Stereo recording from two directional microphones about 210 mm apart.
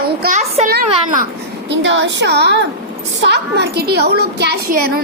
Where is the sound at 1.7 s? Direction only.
60° right (ahead or behind); by 5.0 s 45° right (ahead or behind).